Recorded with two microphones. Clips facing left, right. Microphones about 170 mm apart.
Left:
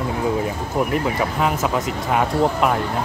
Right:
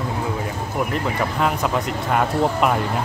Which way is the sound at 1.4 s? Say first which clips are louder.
Even; centre (ahead or behind).